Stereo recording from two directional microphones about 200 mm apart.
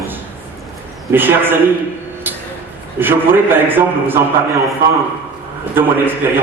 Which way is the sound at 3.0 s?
10° right (ahead or behind).